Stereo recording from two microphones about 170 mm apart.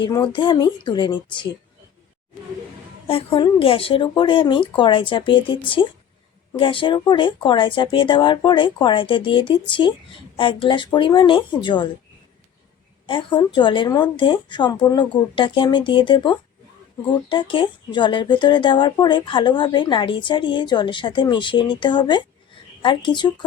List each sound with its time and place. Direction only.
0.0 s speech: 25° left (ahead or behind)
3.1 s speech: 35° left (ahead or behind)
13.1 s speech: 30° left (ahead or behind)